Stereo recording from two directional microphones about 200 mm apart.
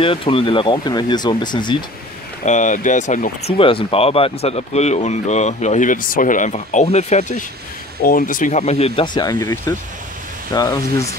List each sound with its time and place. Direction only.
0.0 s speech: 25° left (ahead or behind)
2.4 s speech: 35° left (ahead or behind); by 11.1 s 15° left (ahead or behind)